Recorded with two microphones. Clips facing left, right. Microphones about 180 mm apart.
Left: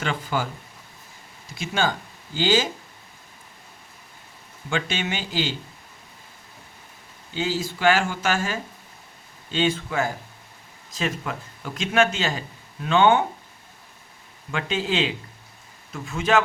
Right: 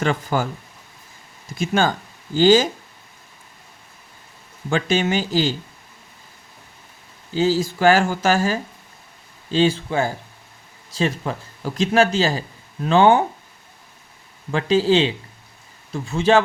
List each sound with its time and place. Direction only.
0.0 s speech: 45° right (ahead or behind)
1.5 s speech: 50° right (ahead or behind)
4.7 s a man's voice: 40° right (ahead or behind)
7.3 s a man's voice: 40° right (ahead or behind)
14.5 s a man's voice: 35° right (ahead or behind)